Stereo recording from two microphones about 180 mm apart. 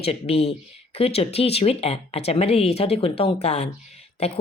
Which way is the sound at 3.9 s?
35° left (ahead or behind).